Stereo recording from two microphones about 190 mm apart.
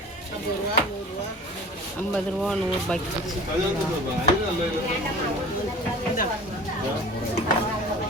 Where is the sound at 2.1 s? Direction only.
5° left (ahead or behind).